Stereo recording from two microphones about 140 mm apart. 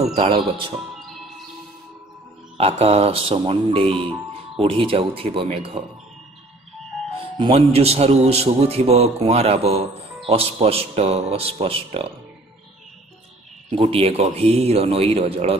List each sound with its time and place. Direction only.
0.0 s speech: 45° right (ahead or behind)
2.5 s speech: 45° right (ahead or behind)
7.5 s a man's voice: 45° right (ahead or behind)
13.7 s a man's voice: 40° right (ahead or behind)